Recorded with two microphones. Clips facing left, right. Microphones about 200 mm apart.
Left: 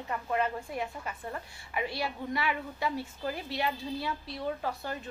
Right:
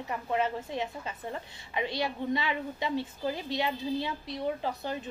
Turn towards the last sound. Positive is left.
turn(degrees=-20)  # may be behind; listen again after turning